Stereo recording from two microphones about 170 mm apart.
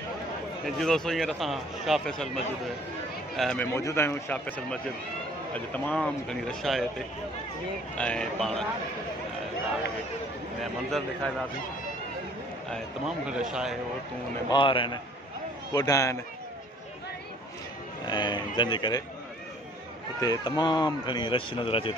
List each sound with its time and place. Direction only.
0.7 s speech: centre (ahead or behind)
3.6 s a man's voice: 15° left (ahead or behind)
7.9 s speech: 5° left (ahead or behind)
10.6 s speech: centre (ahead or behind)
13.3 s speech: 5° right (ahead or behind)
14.5 s speech: 30° left (ahead or behind)
18.0 s speech: 25° left (ahead or behind)
20.2 s speech: 25° left (ahead or behind)